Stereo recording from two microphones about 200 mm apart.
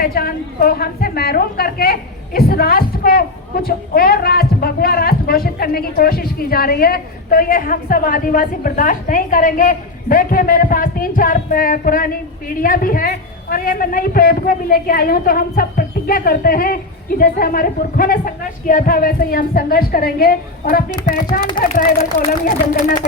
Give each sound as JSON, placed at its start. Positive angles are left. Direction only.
{"t": 0.0, "sound": "a woman's voice", "side_deg": 50}